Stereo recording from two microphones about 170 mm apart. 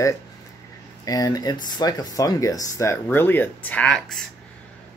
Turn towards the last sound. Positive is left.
turn(degrees=5)  # may be behind; listen again after turning